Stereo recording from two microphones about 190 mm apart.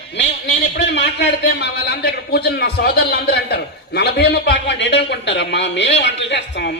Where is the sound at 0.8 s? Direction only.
65° left (ahead or behind).